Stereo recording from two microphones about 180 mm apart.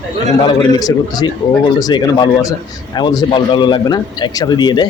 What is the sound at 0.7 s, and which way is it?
A man's voice, 20° left (ahead or behind).